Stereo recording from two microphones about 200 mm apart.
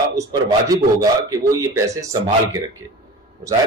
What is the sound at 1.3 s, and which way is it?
Speech, 15° right (ahead or behind).